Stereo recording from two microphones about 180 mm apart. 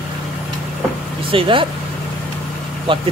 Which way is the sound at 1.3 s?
30° right (ahead or behind).